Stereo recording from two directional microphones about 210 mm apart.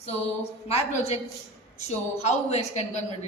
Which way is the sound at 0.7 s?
30° left (ahead or behind).